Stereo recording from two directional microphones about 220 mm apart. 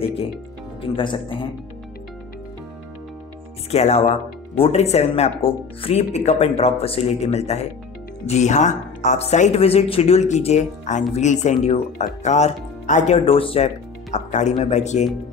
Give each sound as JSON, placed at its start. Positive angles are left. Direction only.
{"t": 0.0, "sound": "speech", "side_deg": 25}
{"t": 3.7, "sound": "speech", "side_deg": 30}